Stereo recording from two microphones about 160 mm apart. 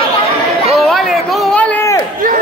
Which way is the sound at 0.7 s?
Centre (ahead or behind).